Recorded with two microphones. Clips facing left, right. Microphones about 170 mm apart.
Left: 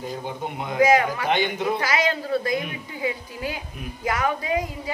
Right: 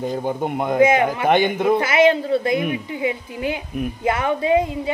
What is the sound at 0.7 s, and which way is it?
Speech, 25° right (ahead or behind).